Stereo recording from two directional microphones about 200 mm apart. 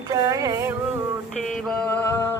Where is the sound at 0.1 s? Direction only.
15° right (ahead or behind).